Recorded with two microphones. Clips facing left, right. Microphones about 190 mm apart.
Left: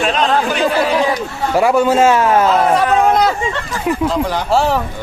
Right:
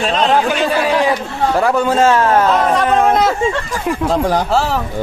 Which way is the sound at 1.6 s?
10° left (ahead or behind).